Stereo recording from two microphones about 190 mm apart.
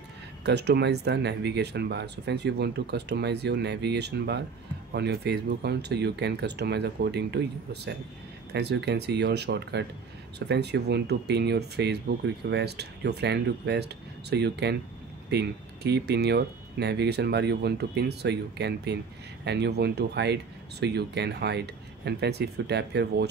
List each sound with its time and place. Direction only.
0.5 s speech: 60° right (ahead or behind)